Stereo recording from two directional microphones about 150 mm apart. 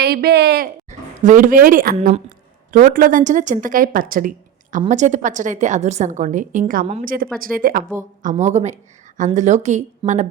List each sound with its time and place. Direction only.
0.0 s speech: 90° right
0.9 s speech: 60° right (ahead or behind)
4.9 s speech: 55° right (ahead or behind)
7.0 s speech: 75° right (ahead or behind)
8.2 s speech: 55° right (ahead or behind)
10.0 s speech: 30° right (ahead or behind)